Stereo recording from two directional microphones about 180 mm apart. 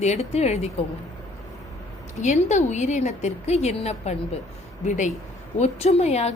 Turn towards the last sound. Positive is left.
turn(degrees=35)  # may be behind; listen again after turning